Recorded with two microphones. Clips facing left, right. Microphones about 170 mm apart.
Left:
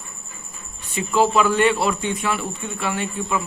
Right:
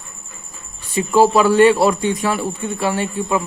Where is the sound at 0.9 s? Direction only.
35° right (ahead or behind).